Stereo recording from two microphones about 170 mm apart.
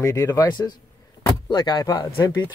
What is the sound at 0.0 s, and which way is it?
Speech, 15° left (ahead or behind).